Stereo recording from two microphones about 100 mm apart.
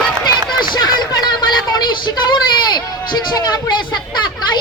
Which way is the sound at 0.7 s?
45° left (ahead or behind).